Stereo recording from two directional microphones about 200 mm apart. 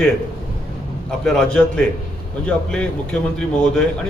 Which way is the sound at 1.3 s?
Centre (ahead or behind).